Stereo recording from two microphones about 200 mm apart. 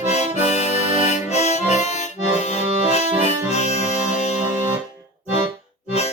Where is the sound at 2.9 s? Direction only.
30° left (ahead or behind).